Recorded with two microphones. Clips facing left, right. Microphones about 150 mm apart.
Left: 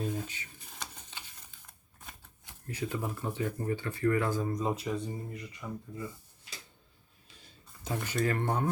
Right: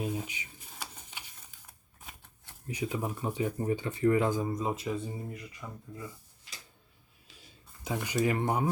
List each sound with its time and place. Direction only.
0.0 s a sound: 10° right (ahead or behind)
2.6 s speech: 15° right (ahead or behind)
4.5 s speech: centre (ahead or behind)
7.9 s speech: 10° right (ahead or behind)